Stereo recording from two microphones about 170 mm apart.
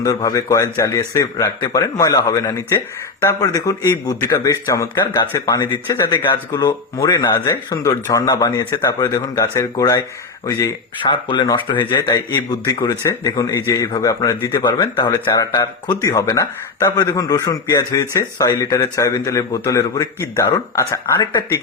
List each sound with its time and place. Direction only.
0.0 s speech: 20° left (ahead or behind)